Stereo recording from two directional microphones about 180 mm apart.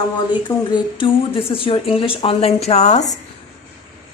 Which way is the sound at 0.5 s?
15° left (ahead or behind).